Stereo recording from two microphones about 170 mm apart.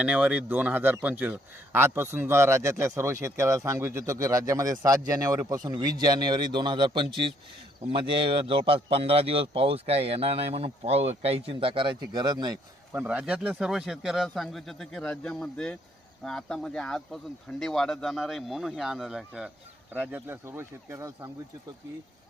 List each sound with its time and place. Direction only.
0.0 s a man's voice: 5° right (ahead or behind); by 12.5 s 25° right (ahead or behind)
12.9 s speech: 10° right (ahead or behind)